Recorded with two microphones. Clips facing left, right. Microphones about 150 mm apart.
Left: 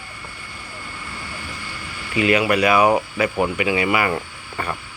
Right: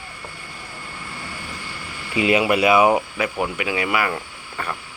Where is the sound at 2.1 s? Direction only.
20° right (ahead or behind).